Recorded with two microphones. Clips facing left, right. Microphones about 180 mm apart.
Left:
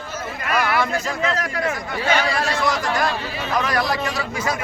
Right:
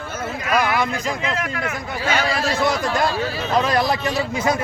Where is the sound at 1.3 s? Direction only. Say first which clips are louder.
Left 2 dB; 35° left (ahead or behind).